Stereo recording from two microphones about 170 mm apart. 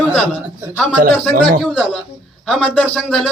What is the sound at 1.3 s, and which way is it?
Speech, 60° right (ahead or behind).